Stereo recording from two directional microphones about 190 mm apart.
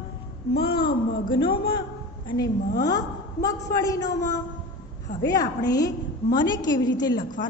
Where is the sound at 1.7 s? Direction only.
25° left (ahead or behind).